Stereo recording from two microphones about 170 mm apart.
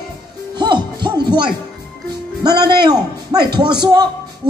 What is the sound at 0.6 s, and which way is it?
Music, 25° right (ahead or behind).